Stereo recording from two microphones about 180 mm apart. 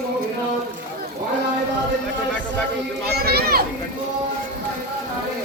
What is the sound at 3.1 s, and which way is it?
Speech, 60° right (ahead or behind).